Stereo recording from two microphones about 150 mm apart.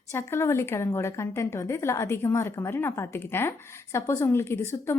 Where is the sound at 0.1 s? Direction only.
15° left (ahead or behind).